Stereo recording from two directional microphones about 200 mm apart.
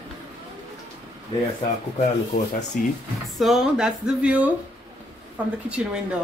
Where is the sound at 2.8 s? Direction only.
45° left (ahead or behind).